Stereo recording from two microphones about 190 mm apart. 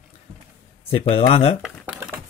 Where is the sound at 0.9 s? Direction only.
30° left (ahead or behind).